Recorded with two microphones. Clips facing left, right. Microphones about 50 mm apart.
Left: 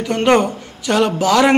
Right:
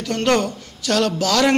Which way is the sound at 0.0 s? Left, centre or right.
Left.